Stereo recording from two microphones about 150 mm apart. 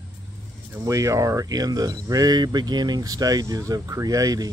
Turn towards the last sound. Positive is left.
turn(degrees=-25)  # may be behind; listen again after turning